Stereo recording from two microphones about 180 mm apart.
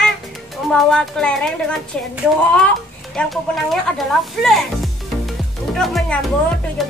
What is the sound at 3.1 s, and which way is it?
Speech, centre (ahead or behind).